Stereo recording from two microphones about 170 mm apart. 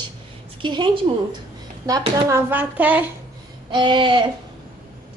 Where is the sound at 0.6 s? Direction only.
30° right (ahead or behind).